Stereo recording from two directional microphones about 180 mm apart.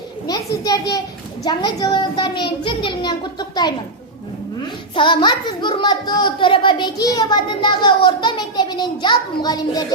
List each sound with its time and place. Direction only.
0.3 s a child's voice: 20° left (ahead or behind)
4.9 s a child's voice: 25° left (ahead or behind)